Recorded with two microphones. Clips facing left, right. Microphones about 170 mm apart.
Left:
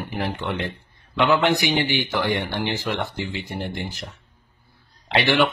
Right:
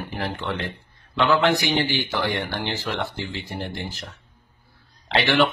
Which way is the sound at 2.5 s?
Centre (ahead or behind).